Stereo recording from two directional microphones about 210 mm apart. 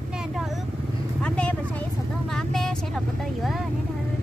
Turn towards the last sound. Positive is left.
turn(degrees=0)  # may be behind; listen again after turning